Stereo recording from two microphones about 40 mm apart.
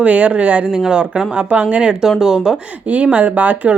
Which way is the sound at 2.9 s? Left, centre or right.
Right.